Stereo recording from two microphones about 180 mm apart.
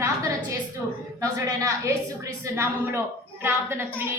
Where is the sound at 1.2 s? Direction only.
15° right (ahead or behind).